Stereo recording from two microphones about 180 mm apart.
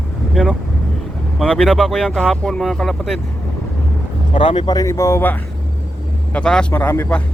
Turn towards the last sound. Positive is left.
turn(degrees=10)  # may be behind; listen again after turning